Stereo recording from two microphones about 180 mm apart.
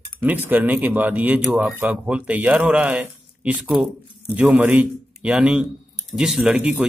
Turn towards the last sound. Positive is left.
turn(degrees=-5)  # may be behind; listen again after turning